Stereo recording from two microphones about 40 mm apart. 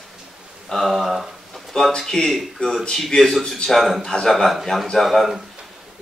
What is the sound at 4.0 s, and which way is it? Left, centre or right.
Speech, centre.